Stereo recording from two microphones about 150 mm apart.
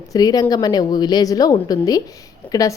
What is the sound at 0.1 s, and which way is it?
A woman's voice, 25° left (ahead or behind).